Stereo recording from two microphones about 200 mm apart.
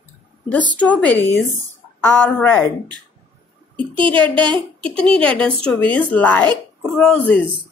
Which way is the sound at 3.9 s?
25° right (ahead or behind).